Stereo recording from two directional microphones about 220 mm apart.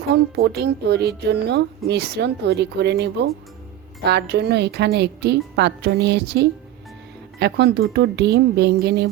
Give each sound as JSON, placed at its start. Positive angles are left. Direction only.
{"t": 0.1, "sound": "a woman's voice", "side_deg": -50}